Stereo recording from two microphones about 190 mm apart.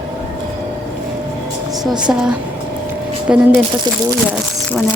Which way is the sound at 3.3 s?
5° right (ahead or behind).